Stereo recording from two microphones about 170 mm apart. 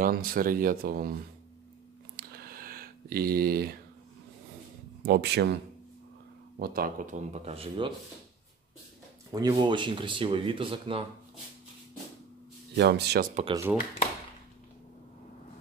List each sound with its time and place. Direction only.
0.0 s speech: 60° right (ahead or behind)
2.1 s a sound: 60° right (ahead or behind)
5.0 s speech: 75° right (ahead or behind)
6.6 s speech: 60° right (ahead or behind); by 7.9 s 30° right (ahead or behind)
9.3 s speech: 25° right (ahead or behind)
12.7 s speech: 85° right
13.3 s speech: 35° right (ahead or behind)
13.6 s speech: 10° right (ahead or behind)